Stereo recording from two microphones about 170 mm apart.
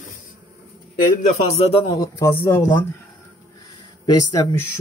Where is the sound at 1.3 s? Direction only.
40° left (ahead or behind).